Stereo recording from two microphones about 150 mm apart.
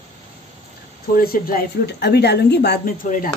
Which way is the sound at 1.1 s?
75° left (ahead or behind).